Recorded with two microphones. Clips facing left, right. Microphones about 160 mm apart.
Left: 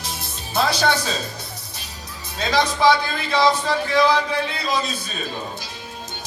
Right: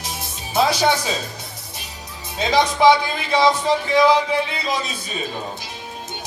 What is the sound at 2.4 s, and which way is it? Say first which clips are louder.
A man's voice: right 3 dB; 20° right (ahead or behind).